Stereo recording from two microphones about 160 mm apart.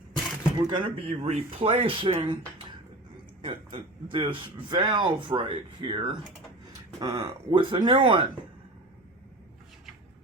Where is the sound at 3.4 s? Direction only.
35° right (ahead or behind).